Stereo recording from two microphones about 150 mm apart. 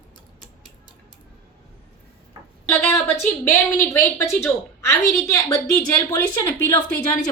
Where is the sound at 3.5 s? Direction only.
15° left (ahead or behind).